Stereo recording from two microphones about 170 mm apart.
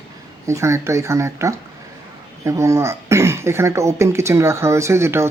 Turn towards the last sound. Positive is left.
turn(degrees=-15)  # may be behind; listen again after turning